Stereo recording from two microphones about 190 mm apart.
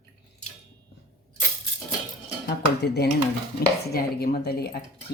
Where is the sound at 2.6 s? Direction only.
60° left (ahead or behind).